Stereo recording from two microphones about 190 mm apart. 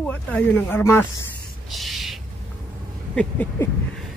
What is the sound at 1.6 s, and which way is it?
Owl, centre (ahead or behind).